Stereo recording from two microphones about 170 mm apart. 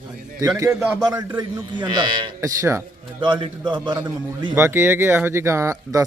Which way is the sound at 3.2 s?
30° right (ahead or behind).